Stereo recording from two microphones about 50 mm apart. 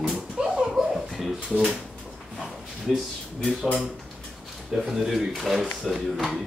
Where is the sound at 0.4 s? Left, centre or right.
Centre.